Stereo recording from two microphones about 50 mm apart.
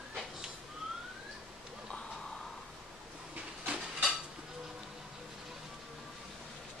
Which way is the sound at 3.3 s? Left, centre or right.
Right.